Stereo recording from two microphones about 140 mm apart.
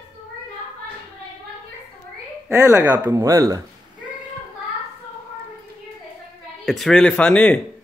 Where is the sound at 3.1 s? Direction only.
20° right (ahead or behind).